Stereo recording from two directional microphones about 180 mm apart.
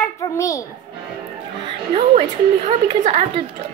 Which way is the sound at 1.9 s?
35° right (ahead or behind).